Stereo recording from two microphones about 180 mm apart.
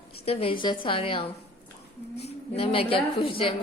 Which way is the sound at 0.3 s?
30° left (ahead or behind).